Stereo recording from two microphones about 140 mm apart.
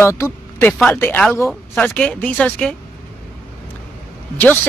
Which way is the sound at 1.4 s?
5° left (ahead or behind).